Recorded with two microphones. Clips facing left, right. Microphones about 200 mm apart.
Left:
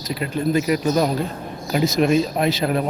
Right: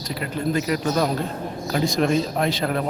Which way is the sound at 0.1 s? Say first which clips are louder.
Left 4 dB; 15° left (ahead or behind).